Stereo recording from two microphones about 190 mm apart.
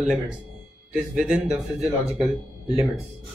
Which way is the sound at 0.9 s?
5° right (ahead or behind).